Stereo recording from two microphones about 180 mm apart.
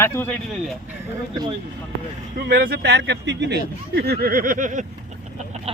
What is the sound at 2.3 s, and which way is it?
Speech, 60° right (ahead or behind).